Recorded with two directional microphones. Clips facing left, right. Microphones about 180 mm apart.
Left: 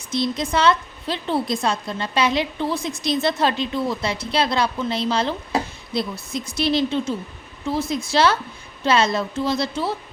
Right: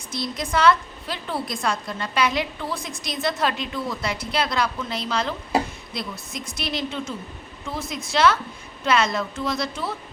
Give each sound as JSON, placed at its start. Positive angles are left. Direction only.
{"t": 0.1, "sound": "a woman's voice", "side_deg": 25}